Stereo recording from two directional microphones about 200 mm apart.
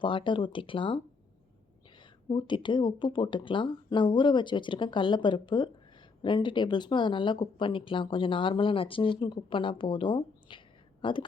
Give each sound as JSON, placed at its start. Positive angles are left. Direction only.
{"t": 0.0, "sound": "speech", "side_deg": 25}
{"t": 2.3, "sound": "speech", "side_deg": 25}